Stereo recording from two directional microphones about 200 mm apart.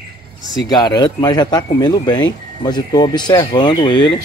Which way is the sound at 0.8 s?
20° left (ahead or behind).